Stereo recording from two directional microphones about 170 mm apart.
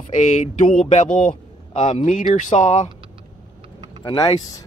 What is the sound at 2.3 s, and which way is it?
Speech, 45° left (ahead or behind).